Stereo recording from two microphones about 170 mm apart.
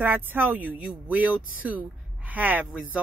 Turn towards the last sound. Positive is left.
turn(degrees=-10)  # may be behind; listen again after turning